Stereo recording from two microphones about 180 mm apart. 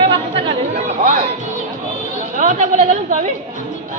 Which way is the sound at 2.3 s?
45° right (ahead or behind).